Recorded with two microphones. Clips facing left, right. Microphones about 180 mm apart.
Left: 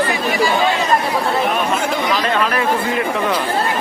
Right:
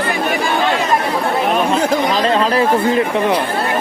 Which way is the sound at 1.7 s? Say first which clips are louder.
Right 3 dB; 40° right (ahead or behind).